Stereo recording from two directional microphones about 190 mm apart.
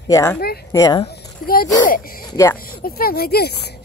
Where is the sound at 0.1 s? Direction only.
15° left (ahead or behind).